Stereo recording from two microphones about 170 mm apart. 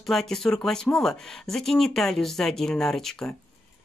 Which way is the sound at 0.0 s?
Centre (ahead or behind).